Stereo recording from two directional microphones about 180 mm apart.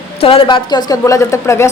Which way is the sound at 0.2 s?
30° left (ahead or behind).